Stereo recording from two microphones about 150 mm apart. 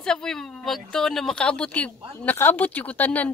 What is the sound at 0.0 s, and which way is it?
Speech, 5° left (ahead or behind).